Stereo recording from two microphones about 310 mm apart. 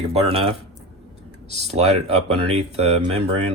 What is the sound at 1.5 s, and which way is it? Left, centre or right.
Speech, right.